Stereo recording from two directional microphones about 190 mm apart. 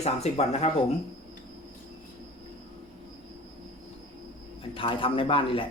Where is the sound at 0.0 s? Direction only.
35° left (ahead or behind).